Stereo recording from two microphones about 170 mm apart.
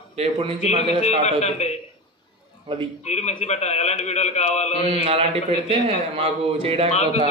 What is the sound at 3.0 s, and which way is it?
A man's voice, 40° left (ahead or behind).